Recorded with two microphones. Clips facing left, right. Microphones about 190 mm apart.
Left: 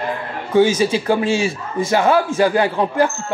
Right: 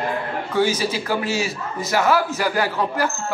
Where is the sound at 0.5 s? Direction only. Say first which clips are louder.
Left 7 dB; 25° left (ahead or behind).